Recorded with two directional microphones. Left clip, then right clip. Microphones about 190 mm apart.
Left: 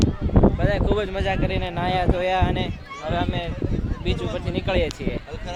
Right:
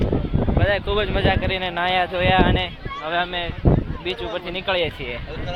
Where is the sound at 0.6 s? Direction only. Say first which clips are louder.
Right 2 dB; centre (ahead or behind).